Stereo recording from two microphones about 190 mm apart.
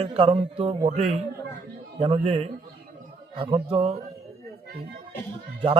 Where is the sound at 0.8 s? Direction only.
40° right (ahead or behind).